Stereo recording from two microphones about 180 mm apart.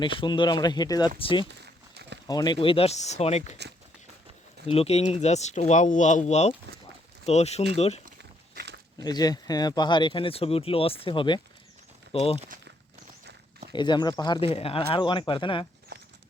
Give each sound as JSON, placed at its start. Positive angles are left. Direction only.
{"t": 0.0, "sound": "speech", "side_deg": 25}
{"t": 4.6, "sound": "speech", "side_deg": 35}
{"t": 8.2, "sound": "biting", "side_deg": -70}
{"t": 9.0, "sound": "speech", "side_deg": 20}
{"t": 13.7, "sound": "speech", "side_deg": 25}